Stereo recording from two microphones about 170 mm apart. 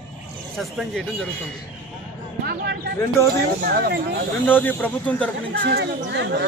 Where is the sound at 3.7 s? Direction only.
70° right (ahead or behind).